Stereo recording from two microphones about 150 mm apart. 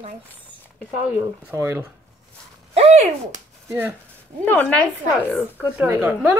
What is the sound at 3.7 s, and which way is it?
Speech, 15° right (ahead or behind).